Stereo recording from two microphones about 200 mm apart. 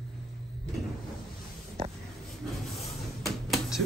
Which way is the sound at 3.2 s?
Centre (ahead or behind).